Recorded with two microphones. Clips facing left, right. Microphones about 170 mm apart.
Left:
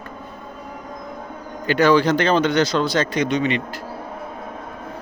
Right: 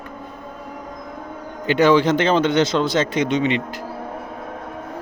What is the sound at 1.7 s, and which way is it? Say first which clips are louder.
Speech: right 1 dB; 20° right (ahead or behind).